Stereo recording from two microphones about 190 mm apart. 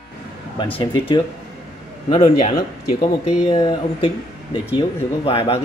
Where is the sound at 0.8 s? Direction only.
25° left (ahead or behind).